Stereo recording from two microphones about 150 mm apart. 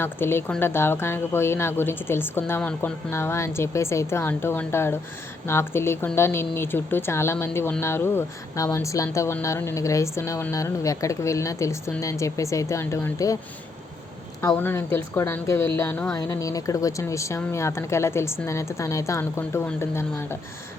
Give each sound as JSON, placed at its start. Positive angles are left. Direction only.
{"t": 0.0, "sound": "a woman's voice", "side_deg": 15}
{"t": 14.5, "sound": "a woman's voice", "side_deg": 15}